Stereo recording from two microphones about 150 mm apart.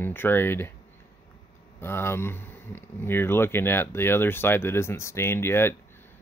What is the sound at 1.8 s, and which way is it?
Speech, 15° left (ahead or behind).